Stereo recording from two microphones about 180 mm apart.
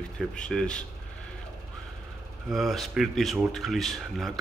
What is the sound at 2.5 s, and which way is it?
Speech, centre (ahead or behind).